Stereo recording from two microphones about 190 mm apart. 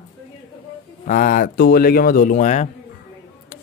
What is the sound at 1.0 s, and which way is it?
Speech, 45° left (ahead or behind).